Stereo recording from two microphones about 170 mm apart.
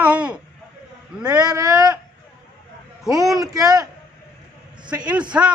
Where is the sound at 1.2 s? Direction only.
20° right (ahead or behind).